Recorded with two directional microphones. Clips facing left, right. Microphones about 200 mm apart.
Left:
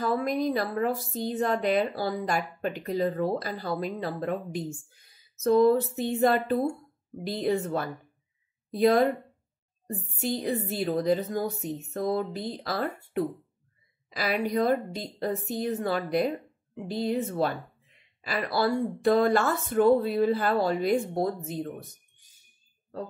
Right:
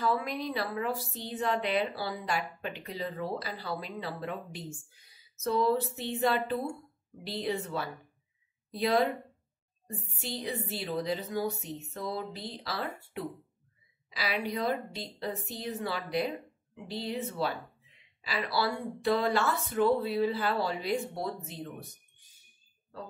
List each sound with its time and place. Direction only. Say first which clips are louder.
0.0 s a woman's voice: left 5 dB; 45° left (ahead or behind)